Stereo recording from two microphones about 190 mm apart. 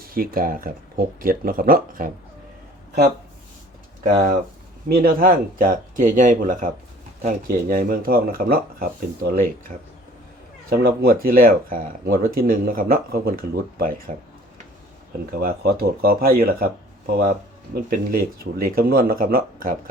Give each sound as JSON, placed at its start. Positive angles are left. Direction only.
{"t": 0.0, "sound": "speech", "side_deg": -50}
{"t": 4.0, "sound": "speech", "side_deg": -50}
{"t": 15.4, "sound": "speech", "side_deg": -55}
{"t": 17.8, "sound": "speech", "side_deg": -50}